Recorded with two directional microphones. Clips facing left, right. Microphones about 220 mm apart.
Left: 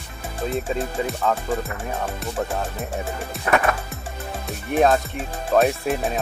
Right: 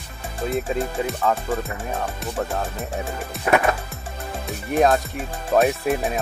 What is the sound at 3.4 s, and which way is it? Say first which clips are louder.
Speech: right 2 dB; centre (ahead or behind).